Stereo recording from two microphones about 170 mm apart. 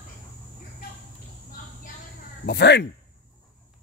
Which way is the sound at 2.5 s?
75° left (ahead or behind).